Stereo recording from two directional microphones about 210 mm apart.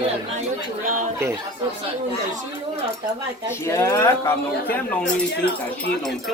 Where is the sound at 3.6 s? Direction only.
15° left (ahead or behind).